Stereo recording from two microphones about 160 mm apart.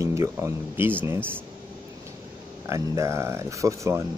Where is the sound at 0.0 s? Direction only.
15° right (ahead or behind).